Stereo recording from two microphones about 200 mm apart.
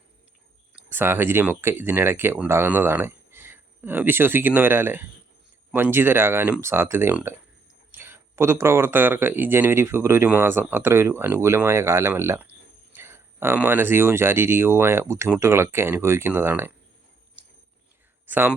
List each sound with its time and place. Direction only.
0.8 s speech: 10° right (ahead or behind)
18.3 s speech: 10° right (ahead or behind)